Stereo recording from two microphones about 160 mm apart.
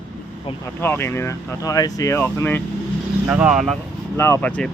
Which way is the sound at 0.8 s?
15° left (ahead or behind).